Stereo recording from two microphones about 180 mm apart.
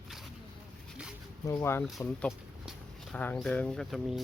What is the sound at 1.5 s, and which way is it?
Speech, 15° left (ahead or behind).